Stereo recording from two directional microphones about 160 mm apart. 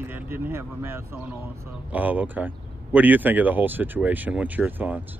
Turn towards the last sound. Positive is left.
turn(degrees=-10)  # may be behind; listen again after turning